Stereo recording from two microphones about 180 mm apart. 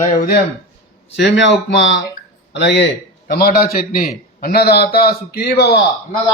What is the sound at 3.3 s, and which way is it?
A man's voice, 55° left (ahead or behind).